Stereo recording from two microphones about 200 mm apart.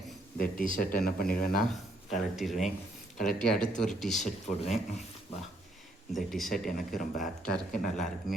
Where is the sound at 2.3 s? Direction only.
Centre (ahead or behind).